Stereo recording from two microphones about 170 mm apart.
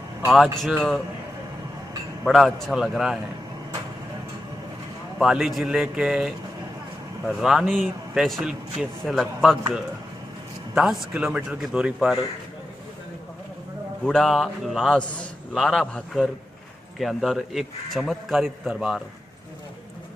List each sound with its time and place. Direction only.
0.3 s a man's voice: centre (ahead or behind)
2.2 s a man's voice: centre (ahead or behind)
5.2 s a man's voice: centre (ahead or behind)
10.7 s a man's voice: centre (ahead or behind)
14.0 s a man's voice: 5° left (ahead or behind)